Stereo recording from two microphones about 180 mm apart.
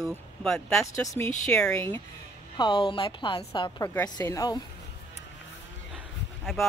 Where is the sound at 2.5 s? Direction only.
25° left (ahead or behind).